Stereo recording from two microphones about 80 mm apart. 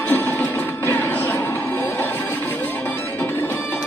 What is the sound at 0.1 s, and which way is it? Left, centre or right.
Music, left.